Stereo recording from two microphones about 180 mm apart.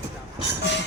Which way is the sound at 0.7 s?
75° left (ahead or behind).